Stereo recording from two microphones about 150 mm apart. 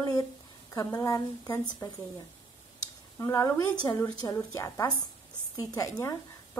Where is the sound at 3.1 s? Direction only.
20° left (ahead or behind).